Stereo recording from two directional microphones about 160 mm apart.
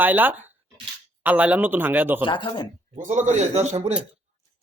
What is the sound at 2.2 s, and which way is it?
Speech, 30° left (ahead or behind).